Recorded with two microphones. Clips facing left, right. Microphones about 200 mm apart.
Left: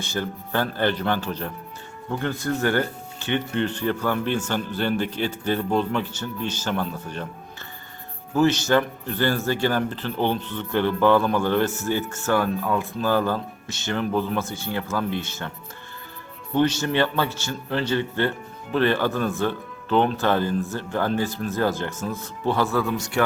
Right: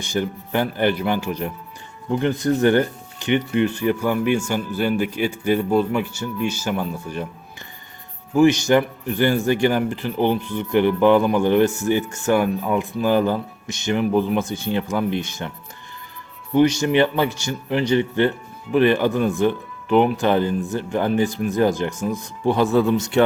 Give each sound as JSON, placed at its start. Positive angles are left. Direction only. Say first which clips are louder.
{"t": 0.0, "sound": "speech", "louder": "right 4 dB", "side_deg": -15}
{"t": 8.4, "sound": "speech", "louder": "right 4 dB", "side_deg": -15}
{"t": 16.6, "sound": "speech", "louder": "right 5 dB", "side_deg": -15}